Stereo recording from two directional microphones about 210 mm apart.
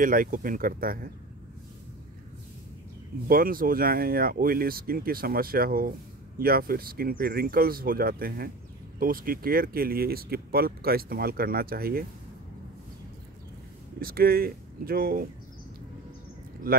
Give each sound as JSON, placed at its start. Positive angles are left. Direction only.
{"t": 0.0, "sound": "speech", "side_deg": -40}
{"t": 3.3, "sound": "speech", "side_deg": -45}
{"t": 13.9, "sound": "speech", "side_deg": -45}